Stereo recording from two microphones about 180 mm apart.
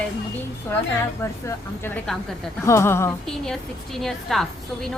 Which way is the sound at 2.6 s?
15° left (ahead or behind).